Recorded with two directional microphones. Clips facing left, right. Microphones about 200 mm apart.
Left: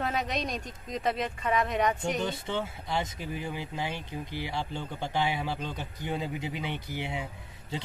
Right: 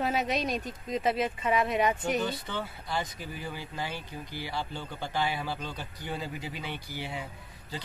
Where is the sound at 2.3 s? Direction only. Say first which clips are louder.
Left 3 dB; 25° left (ahead or behind).